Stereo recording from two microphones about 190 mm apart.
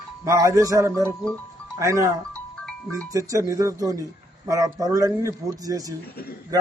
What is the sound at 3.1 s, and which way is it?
A man's voice, 15° right (ahead or behind).